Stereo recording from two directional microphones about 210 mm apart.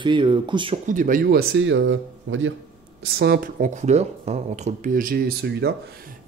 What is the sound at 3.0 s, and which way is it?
Speech, 50° right (ahead or behind).